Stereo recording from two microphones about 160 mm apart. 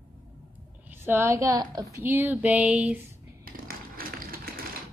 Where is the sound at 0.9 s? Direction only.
15° right (ahead or behind).